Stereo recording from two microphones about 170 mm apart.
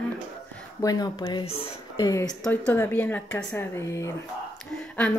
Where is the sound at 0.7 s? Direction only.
20° left (ahead or behind).